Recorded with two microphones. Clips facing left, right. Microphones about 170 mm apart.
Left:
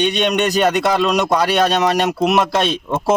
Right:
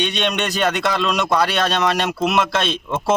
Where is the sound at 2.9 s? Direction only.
15° left (ahead or behind).